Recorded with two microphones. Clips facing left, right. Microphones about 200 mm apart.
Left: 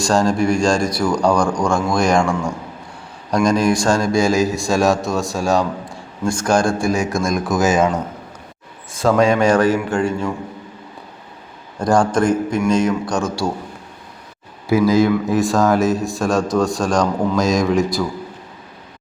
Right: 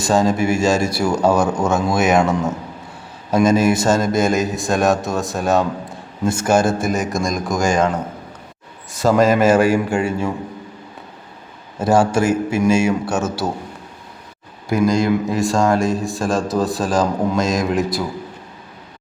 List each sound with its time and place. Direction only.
0.0 s a man's voice: centre (ahead or behind)
2.2 s a man's voice: 20° right (ahead or behind)
3.3 s a man's voice: 5° right (ahead or behind)
8.9 s a man's voice: centre (ahead or behind)
11.8 s a man's voice: 5° right (ahead or behind)
14.7 s a man's voice: 5° left (ahead or behind)